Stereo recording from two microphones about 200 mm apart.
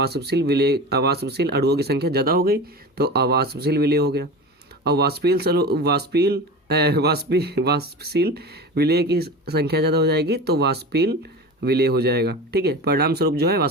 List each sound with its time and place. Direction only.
0.0 s speech: 55° right (ahead or behind)